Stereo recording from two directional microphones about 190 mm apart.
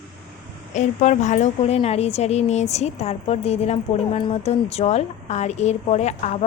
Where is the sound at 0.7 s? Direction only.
40° left (ahead or behind).